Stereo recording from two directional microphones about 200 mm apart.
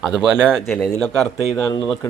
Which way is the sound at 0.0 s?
Centre (ahead or behind).